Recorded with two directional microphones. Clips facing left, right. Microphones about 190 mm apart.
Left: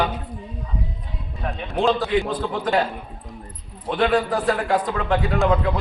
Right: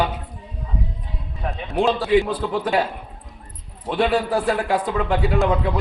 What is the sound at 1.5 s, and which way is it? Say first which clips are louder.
A man's voice: even; 5° right (ahead or behind).